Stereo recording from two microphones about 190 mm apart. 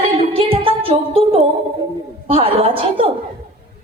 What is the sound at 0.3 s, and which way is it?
Music, 30° right (ahead or behind).